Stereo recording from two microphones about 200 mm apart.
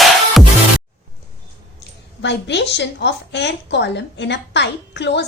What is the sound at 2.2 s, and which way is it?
A woman's voice, 60° left (ahead or behind).